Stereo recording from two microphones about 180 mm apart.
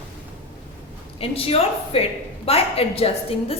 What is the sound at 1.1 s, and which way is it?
A woman's voice, 35° left (ahead or behind).